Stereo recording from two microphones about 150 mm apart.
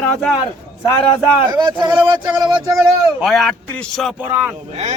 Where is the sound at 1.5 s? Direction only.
30° right (ahead or behind).